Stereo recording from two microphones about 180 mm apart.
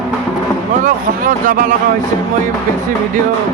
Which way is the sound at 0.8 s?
50° right (ahead or behind).